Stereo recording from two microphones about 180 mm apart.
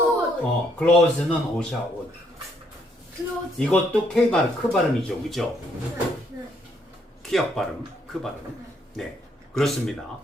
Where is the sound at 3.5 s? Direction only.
5° left (ahead or behind).